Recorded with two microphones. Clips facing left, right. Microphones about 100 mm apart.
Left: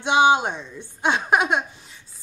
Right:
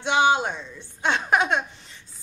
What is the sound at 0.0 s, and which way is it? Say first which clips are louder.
A woman's voice: left 3 dB; 15° left (ahead or behind).